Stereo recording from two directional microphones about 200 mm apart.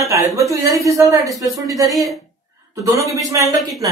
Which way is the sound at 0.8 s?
15° right (ahead or behind).